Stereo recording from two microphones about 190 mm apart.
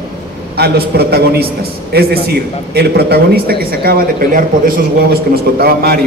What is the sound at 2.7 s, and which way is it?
A man's voice, 55° right (ahead or behind).